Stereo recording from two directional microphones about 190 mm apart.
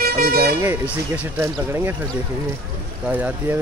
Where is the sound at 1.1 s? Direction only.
10° right (ahead or behind).